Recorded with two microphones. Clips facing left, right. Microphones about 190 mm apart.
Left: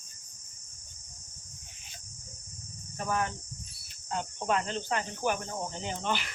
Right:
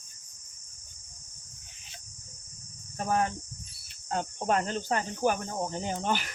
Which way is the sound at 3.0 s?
40° right (ahead or behind).